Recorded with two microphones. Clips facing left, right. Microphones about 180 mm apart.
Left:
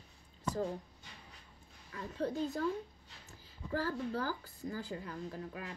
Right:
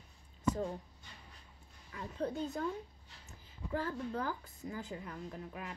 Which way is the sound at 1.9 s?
40° left (ahead or behind).